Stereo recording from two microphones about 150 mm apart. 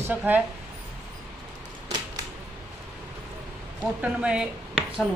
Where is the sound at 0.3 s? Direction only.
15° right (ahead or behind).